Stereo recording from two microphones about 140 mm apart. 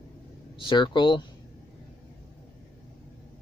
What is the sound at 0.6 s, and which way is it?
Speech, 35° left (ahead or behind).